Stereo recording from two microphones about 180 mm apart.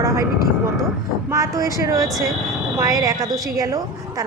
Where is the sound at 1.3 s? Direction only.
20° right (ahead or behind).